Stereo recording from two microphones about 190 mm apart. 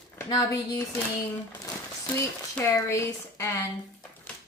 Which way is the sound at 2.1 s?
15° left (ahead or behind).